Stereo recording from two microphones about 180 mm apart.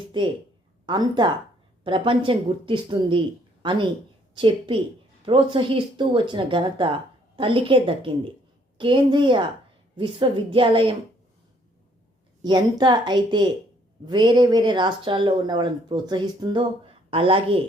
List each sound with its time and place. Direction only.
0.9 s speech: 25° right (ahead or behind)
12.4 s a woman's voice: 25° right (ahead or behind)